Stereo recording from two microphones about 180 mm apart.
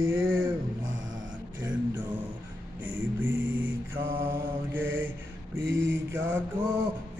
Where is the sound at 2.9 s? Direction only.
90° right.